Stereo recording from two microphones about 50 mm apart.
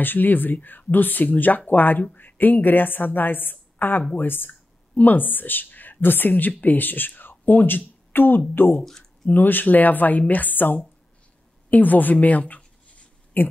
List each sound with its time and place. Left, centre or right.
0.0 s a woman's voice: left
8.8 s speech: centre
9.3 s a woman's voice: left
11.7 s a sound: left